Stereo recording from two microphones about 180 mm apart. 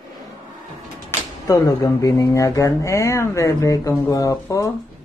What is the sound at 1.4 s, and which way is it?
Speech, 20° left (ahead or behind).